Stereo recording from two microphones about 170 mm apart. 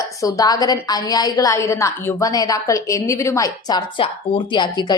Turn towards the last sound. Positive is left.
turn(degrees=25)  # may be behind; listen again after turning